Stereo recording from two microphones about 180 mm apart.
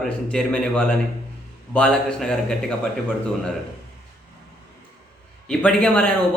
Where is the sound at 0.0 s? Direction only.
5° left (ahead or behind).